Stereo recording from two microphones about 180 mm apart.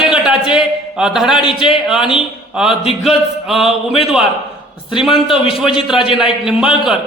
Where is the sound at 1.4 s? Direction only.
25° left (ahead or behind).